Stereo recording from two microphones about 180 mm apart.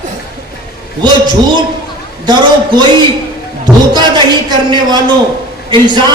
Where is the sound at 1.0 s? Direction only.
25° right (ahead or behind).